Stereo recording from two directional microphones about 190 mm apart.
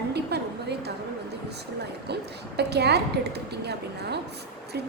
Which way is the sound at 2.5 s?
60° right (ahead or behind).